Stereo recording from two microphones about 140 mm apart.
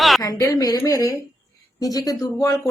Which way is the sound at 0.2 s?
25° left (ahead or behind).